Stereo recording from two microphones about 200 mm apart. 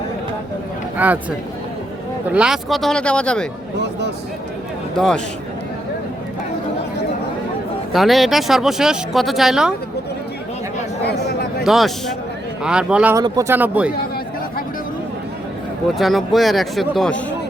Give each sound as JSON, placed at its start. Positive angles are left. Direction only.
{"t": 0.9, "sound": "speech", "side_deg": -10}
{"t": 2.3, "sound": "speech", "side_deg": -5}
{"t": 4.9, "sound": "speech", "side_deg": 5}
{"t": 7.9, "sound": "speech", "side_deg": 0}
{"t": 11.0, "sound": "a sound", "side_deg": 55}
{"t": 11.6, "sound": "speech", "side_deg": 0}
{"t": 13.1, "sound": "speech", "side_deg": -15}
{"t": 16.0, "sound": "speech", "side_deg": 0}